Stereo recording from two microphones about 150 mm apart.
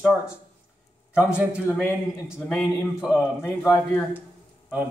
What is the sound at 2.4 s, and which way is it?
Speech, centre (ahead or behind).